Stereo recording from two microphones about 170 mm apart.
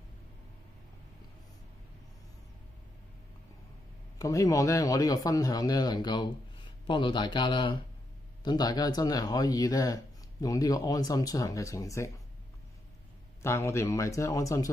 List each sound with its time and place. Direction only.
4.2 s speech: 20° left (ahead or behind)
13.4 s a man's voice: 15° left (ahead or behind)